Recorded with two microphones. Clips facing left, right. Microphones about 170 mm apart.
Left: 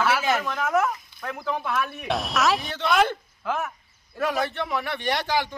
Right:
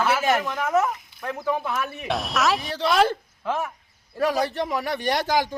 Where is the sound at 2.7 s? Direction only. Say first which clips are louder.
Right 2 dB; 35° right (ahead or behind).